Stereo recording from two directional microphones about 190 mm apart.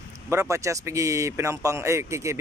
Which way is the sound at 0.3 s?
15° right (ahead or behind).